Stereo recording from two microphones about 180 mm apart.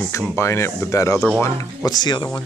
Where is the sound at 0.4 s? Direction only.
15° left (ahead or behind).